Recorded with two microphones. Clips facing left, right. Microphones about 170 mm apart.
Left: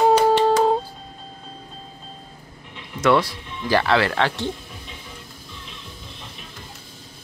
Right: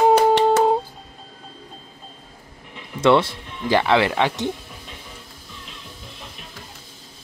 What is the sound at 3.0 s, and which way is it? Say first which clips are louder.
Speech: right 2 dB; 25° right (ahead or behind).